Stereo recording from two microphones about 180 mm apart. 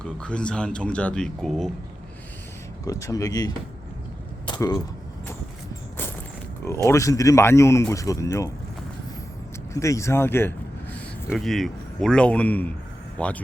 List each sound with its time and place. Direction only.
0.0 s speech: 5° left (ahead or behind)
2.8 s speech: 20° left (ahead or behind)
4.4 s a sound: 20° left (ahead or behind)
6.7 s speech: 15° left (ahead or behind)
9.7 s speech: 15° left (ahead or behind)
11.3 s speech: centre (ahead or behind)